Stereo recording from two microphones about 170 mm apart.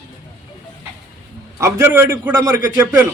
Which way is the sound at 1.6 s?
15° right (ahead or behind).